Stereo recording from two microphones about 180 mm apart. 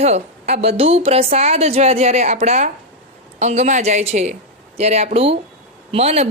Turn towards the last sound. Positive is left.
turn(degrees=-35)  # may be behind; listen again after turning